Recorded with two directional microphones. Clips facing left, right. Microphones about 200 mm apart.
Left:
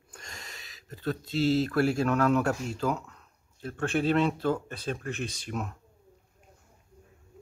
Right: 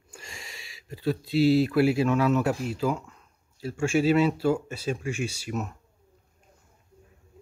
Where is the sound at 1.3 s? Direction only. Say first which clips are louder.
Right 5 dB; 10° right (ahead or behind).